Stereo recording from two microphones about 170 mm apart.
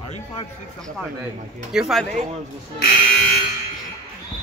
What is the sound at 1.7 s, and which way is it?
Speech, centre (ahead or behind).